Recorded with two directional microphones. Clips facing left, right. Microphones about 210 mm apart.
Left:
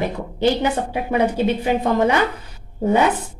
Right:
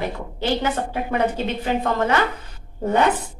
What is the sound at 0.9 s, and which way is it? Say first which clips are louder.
A woman's voice: left 3 dB; 15° left (ahead or behind).